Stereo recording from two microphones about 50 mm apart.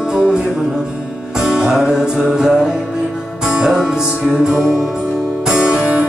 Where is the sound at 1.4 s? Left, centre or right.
Centre.